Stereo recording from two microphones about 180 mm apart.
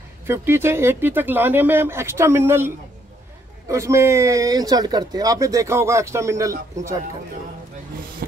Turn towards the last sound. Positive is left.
turn(degrees=-20)  # may be behind; listen again after turning